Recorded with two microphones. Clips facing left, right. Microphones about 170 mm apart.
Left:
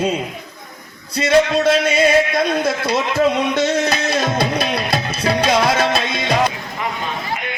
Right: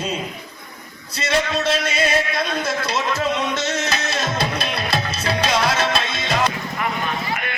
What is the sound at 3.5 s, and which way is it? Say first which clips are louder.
Music: left 6 dB; 55° left (ahead or behind).